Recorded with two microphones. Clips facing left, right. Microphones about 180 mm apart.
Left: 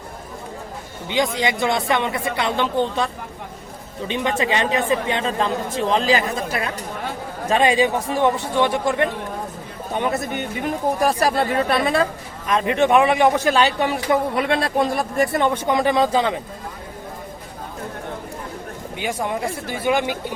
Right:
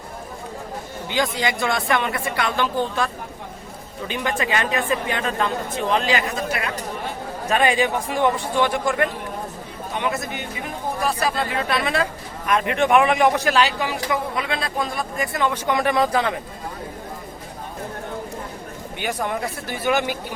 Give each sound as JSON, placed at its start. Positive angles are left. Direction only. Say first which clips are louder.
{"t": 1.1, "sound": "speech", "louder": "left 2 dB", "side_deg": 20}
{"t": 4.1, "sound": "speech", "louder": "left 2 dB", "side_deg": 25}
{"t": 7.5, "sound": "speech", "louder": "left 2 dB", "side_deg": 25}
{"t": 9.9, "sound": "speech", "louder": "left 3 dB", "side_deg": 45}
{"t": 12.5, "sound": "speech", "louder": "left 2 dB", "side_deg": 25}
{"t": 13.8, "sound": "speech", "louder": "left 5 dB", "side_deg": 45}
{"t": 15.6, "sound": "speech", "louder": "left 2 dB", "side_deg": 25}
{"t": 19.7, "sound": "speech", "louder": "left 1 dB", "side_deg": 20}